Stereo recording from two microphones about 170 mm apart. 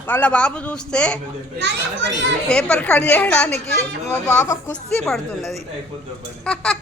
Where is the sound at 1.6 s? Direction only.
90° right.